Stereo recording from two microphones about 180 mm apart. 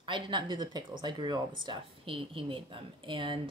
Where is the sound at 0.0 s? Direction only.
25° right (ahead or behind).